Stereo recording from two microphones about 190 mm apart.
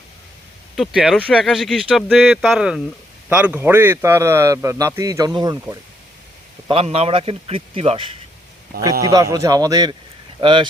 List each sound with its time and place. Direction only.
0.8 s a man's voice: centre (ahead or behind); by 5.7 s 20° right (ahead or behind)
6.7 s a man's voice: 30° right (ahead or behind)
8.8 s a man's voice: 20° right (ahead or behind)